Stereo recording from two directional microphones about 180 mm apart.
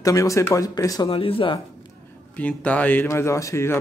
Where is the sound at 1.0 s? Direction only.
30° left (ahead or behind).